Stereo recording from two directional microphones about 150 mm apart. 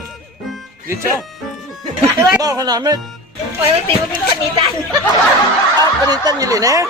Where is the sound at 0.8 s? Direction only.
20° right (ahead or behind).